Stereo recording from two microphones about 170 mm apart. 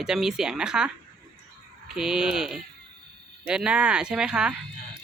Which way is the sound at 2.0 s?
5° right (ahead or behind).